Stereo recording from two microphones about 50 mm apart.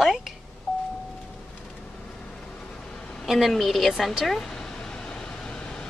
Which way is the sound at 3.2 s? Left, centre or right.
Centre.